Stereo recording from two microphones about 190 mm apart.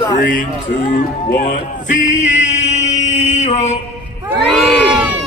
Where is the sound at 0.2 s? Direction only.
45° left (ahead or behind).